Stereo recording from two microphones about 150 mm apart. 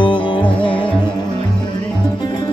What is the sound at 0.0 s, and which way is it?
Music, 35° left (ahead or behind).